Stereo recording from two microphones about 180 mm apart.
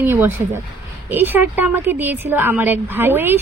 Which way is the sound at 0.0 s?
15° right (ahead or behind).